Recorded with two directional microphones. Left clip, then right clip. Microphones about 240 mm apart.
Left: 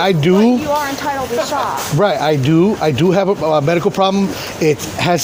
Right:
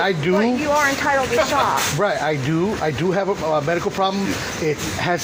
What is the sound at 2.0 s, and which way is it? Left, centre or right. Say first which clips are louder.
Speech: left 6 dB; left.